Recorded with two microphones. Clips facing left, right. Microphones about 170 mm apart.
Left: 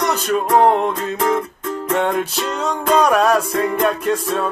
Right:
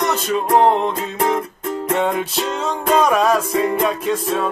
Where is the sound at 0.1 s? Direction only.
Centre (ahead or behind).